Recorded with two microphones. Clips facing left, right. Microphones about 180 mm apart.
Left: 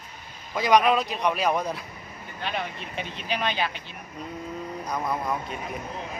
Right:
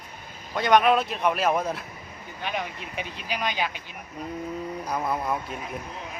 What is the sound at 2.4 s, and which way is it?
Speech, 10° right (ahead or behind).